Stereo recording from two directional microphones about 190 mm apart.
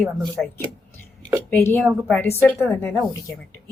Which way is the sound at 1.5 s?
15° left (ahead or behind).